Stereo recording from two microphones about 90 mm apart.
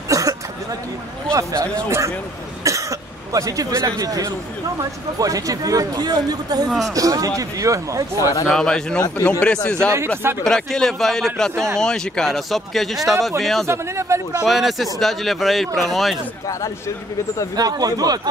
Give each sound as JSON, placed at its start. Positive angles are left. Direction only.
{"t": 0.1, "sound": "a sound", "side_deg": -40}
{"t": 1.3, "sound": "a man's voice", "side_deg": -35}
{"t": 8.2, "sound": "a man's voice", "side_deg": 40}
{"t": 8.5, "sound": "a man's voice", "side_deg": 5}
{"t": 13.7, "sound": "speech", "side_deg": -30}
{"t": 14.4, "sound": "speech", "side_deg": 0}
{"t": 17.6, "sound": "a man's voice", "side_deg": -45}